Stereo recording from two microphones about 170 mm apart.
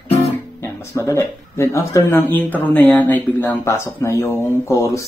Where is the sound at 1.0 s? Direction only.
15° left (ahead or behind).